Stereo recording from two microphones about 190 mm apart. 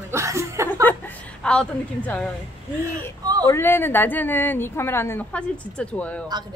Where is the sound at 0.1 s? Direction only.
15° right (ahead or behind).